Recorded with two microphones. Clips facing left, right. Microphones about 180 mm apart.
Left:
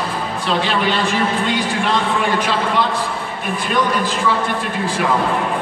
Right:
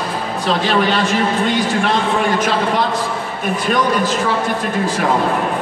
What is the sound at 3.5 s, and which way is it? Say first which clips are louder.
Speech: right 2 dB; 40° right (ahead or behind).